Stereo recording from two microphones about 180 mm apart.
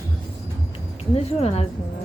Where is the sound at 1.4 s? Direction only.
40° left (ahead or behind).